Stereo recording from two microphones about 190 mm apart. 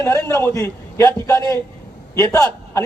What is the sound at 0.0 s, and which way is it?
A man's voice, 15° left (ahead or behind).